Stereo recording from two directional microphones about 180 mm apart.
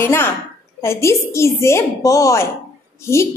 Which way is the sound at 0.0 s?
10° left (ahead or behind).